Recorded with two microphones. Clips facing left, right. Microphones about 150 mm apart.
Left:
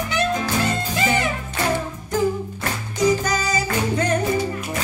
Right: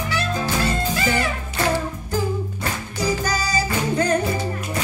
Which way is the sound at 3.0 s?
30° right (ahead or behind).